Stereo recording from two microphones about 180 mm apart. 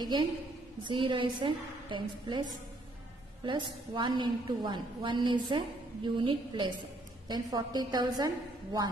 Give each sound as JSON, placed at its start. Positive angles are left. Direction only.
{"t": 0.0, "sound": "a woman's voice", "side_deg": -25}
{"t": 3.4, "sound": "a woman's voice", "side_deg": -25}